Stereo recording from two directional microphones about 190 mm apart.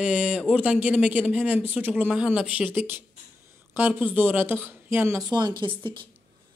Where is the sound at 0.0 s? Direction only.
5° right (ahead or behind).